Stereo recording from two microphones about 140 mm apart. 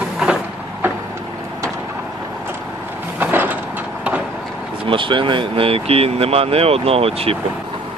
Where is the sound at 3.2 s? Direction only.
10° right (ahead or behind).